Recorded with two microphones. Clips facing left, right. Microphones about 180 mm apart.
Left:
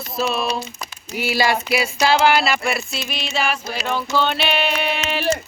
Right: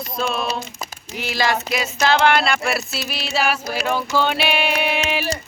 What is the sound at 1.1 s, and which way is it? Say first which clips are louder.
Speech: left 2 dB; 10° left (ahead or behind).